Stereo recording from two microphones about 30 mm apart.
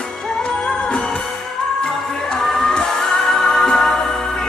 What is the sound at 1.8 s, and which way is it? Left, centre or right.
Music, left.